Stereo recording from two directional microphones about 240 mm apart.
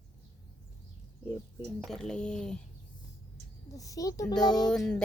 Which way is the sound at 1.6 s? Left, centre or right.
Centre.